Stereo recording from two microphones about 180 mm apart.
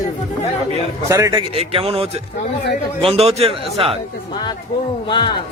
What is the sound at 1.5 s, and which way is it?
A man's voice, 35° right (ahead or behind).